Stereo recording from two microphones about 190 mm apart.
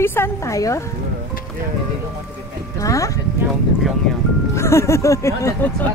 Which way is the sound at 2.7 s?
15° left (ahead or behind).